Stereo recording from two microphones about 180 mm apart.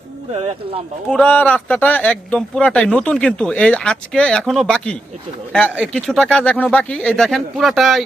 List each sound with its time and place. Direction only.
0.3 s speech: 35° right (ahead or behind)
1.1 s speech: 5° left (ahead or behind)